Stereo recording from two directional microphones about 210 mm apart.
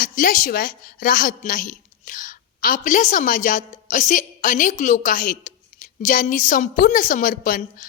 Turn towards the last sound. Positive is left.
turn(degrees=40)  # may be behind; listen again after turning